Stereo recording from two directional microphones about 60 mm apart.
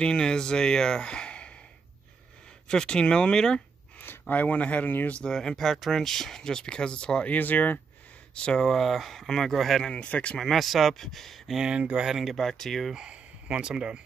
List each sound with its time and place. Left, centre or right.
0.0 s speech: centre
2.7 s speech: centre
4.0 s speech: left
5.1 s speech: centre
7.2 s speech: left
8.4 s speech: centre
9.8 s speech: left
10.4 s speech: centre
11.5 s speech: centre
12.1 s speech: centre
12.4 s speech: centre
12.9 s speech: centre